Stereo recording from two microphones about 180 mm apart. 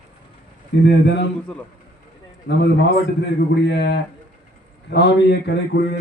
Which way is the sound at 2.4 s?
75° left (ahead or behind).